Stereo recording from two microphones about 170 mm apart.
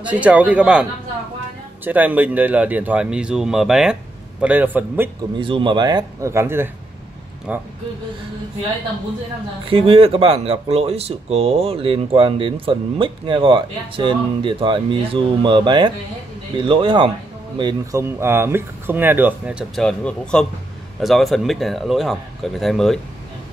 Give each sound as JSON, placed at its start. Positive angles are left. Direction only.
{"t": 0.0, "sound": "speech", "side_deg": -10}
{"t": 1.9, "sound": "speech", "side_deg": -10}
{"t": 5.4, "sound": "speech", "side_deg": -30}
{"t": 9.7, "sound": "speech", "side_deg": -35}